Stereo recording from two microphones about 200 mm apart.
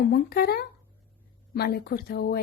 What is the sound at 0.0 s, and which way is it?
A woman's voice, 50° left (ahead or behind).